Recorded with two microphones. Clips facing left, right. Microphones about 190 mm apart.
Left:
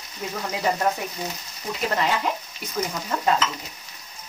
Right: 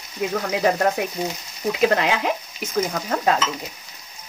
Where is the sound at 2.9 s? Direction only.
65° right (ahead or behind).